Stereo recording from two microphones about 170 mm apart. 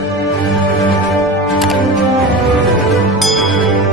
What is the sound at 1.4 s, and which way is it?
Music, centre (ahead or behind).